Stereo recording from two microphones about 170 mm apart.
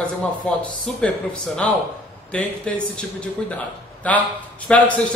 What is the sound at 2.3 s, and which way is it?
Speech, 5° left (ahead or behind).